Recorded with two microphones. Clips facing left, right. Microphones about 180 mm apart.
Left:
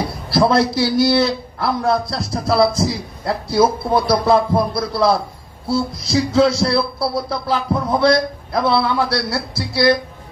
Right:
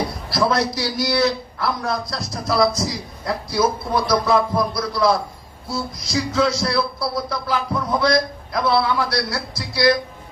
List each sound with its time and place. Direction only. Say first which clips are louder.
0.3 s a man's voice: left 6 dB; 30° left (ahead or behind)